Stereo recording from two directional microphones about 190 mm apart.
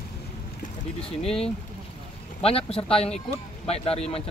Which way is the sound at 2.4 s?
30° left (ahead or behind).